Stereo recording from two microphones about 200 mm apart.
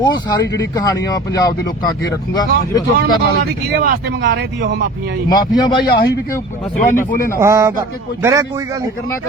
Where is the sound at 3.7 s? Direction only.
50° right (ahead or behind).